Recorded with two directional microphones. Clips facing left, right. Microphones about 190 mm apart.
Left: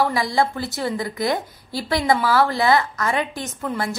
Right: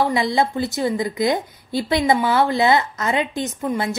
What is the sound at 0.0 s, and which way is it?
A woman's voice, 20° right (ahead or behind).